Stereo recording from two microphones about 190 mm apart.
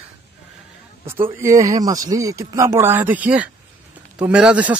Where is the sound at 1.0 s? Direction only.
15° right (ahead or behind).